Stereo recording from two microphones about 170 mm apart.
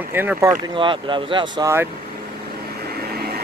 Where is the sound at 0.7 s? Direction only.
30° right (ahead or behind).